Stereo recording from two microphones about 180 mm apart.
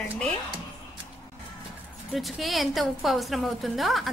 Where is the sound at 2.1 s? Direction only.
Centre (ahead or behind).